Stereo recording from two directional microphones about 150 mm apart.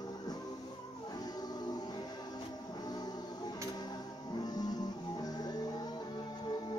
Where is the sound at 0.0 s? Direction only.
25° left (ahead or behind).